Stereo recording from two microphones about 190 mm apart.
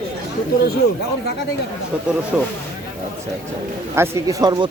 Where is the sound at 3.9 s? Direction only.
15° right (ahead or behind).